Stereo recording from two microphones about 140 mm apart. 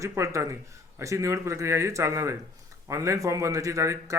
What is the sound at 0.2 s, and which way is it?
Speech, 20° right (ahead or behind).